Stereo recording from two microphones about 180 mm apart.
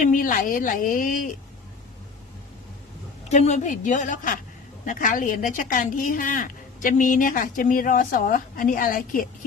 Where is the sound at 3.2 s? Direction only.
40° left (ahead or behind).